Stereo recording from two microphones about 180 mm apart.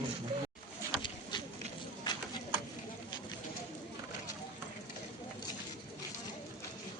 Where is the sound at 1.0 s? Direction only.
25° left (ahead or behind).